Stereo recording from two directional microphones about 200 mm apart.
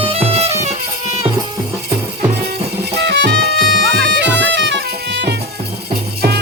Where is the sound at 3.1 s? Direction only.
60° right (ahead or behind).